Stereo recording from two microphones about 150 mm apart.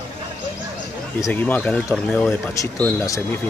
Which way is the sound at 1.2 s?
10° left (ahead or behind).